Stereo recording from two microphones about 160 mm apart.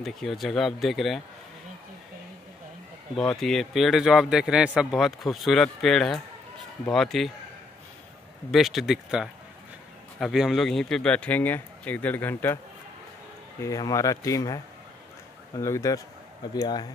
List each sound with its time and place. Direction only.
0.0 s a man's voice: centre (ahead or behind)
3.2 s a man's voice: 5° left (ahead or behind)
8.5 s a man's voice: centre (ahead or behind)
13.6 s speech: 20° left (ahead or behind)